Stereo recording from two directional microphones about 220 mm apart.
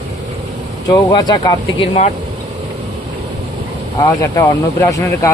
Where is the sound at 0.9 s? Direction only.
20° left (ahead or behind).